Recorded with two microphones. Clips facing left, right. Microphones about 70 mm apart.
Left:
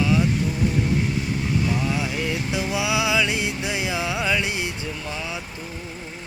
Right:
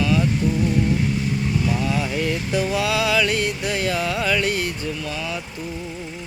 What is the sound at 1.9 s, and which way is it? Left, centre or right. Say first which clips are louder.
Music: right 3 dB; centre.